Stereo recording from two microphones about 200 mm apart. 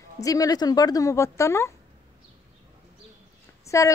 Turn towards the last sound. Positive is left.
turn(degrees=15)  # may be behind; listen again after turning